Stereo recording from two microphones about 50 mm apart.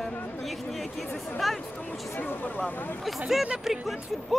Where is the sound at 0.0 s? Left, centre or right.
Centre.